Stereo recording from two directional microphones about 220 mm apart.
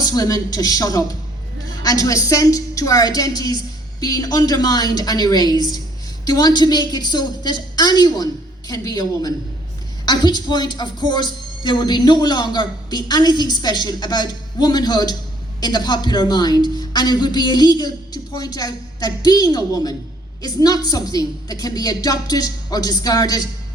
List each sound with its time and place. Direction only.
0.0 s a man's voice: 15° left (ahead or behind)